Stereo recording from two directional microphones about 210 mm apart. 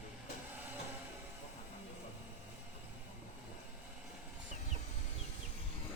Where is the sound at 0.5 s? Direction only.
10° right (ahead or behind).